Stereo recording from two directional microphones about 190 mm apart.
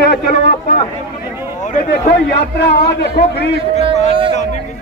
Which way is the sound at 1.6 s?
40° left (ahead or behind).